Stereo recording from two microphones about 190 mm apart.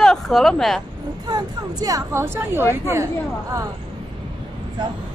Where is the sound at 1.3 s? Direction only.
20° right (ahead or behind).